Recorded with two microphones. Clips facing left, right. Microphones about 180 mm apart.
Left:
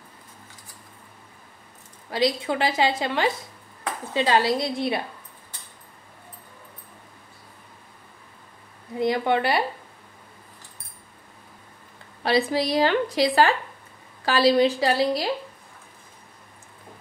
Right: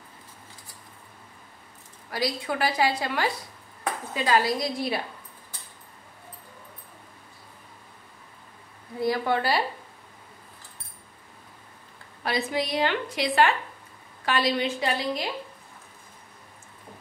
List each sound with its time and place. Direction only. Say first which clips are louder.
2.0 s a woman's voice: left 5 dB; 25° left (ahead or behind)
8.9 s a woman's voice: left 3 dB; 20° left (ahead or behind)
12.2 s a woman's voice: left 5 dB; 30° left (ahead or behind)